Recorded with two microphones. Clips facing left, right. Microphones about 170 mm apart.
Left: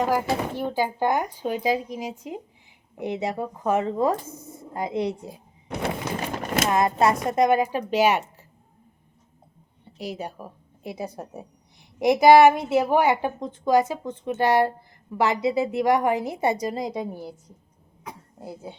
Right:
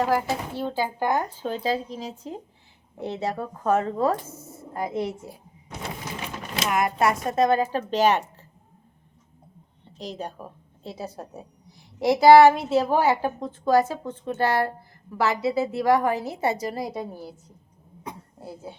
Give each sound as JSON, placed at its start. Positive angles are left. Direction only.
{"t": 0.0, "sound": "a woman's voice", "side_deg": 15}
{"t": 5.6, "sound": "a sound", "side_deg": 65}
{"t": 6.1, "sound": "a sound", "side_deg": 45}
{"t": 6.7, "sound": "a woman's voice", "side_deg": 25}
{"t": 9.8, "sound": "a woman's voice", "side_deg": 10}
{"t": 18.3, "sound": "speech", "side_deg": 20}